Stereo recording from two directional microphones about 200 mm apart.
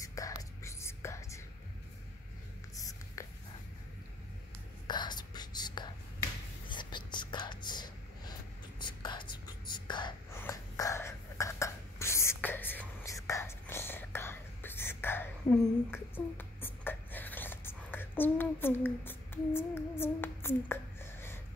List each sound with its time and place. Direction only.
0.0 s whispering: 15° left (ahead or behind)
2.7 s writing: 15° left (ahead or behind)
4.8 s whispering: 20° left (ahead or behind)
10.3 s a sound: 15° left (ahead or behind)